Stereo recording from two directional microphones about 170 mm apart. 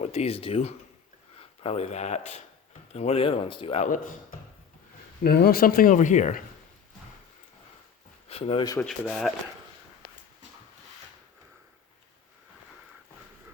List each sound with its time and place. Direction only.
0.0 s speech: 40° left (ahead or behind)
3.8 s speech: 50° left (ahead or behind)
5.2 s speech: 65° left (ahead or behind); by 6.4 s 45° left (ahead or behind)
8.3 s speech: 35° left (ahead or behind)
8.8 s speech: centre (ahead or behind)